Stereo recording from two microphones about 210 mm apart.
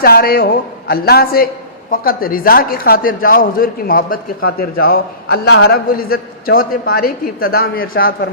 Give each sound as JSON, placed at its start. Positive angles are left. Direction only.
{"t": 0.0, "sound": "a man's voice", "side_deg": 45}